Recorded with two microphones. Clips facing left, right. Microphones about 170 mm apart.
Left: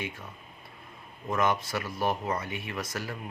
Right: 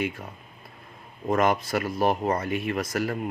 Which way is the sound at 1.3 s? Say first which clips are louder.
Right 5 dB; 40° right (ahead or behind).